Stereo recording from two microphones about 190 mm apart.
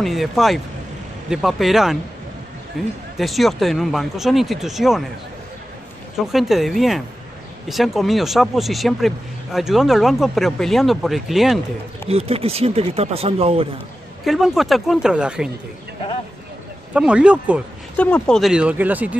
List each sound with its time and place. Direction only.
0.0 s speech: centre (ahead or behind)
6.1 s speech: centre (ahead or behind)
12.1 s speech: 30° right (ahead or behind)
14.2 s speech: centre (ahead or behind)
16.9 s speech: 5° right (ahead or behind)
17.9 s speech: 5° left (ahead or behind)